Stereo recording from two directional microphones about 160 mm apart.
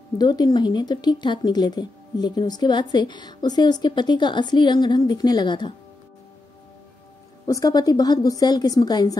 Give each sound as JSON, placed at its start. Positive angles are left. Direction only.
{"t": 0.2, "sound": "speech", "side_deg": 25}
{"t": 7.4, "sound": "speech", "side_deg": 20}